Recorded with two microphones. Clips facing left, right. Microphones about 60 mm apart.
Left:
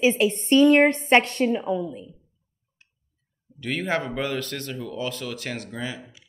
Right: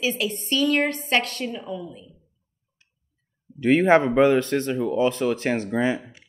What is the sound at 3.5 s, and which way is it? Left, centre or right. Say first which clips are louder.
Speech: right 10 dB; right.